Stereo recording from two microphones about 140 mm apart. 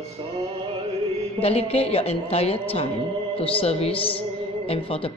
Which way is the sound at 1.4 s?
45° left (ahead or behind).